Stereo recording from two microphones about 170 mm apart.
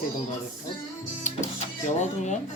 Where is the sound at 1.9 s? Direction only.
45° left (ahead or behind).